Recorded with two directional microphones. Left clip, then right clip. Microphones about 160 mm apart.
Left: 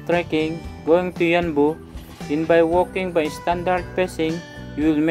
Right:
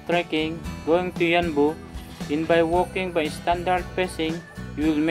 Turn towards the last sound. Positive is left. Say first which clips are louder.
# left 3 dB
turn(degrees=25)  # may be behind; listen again after turning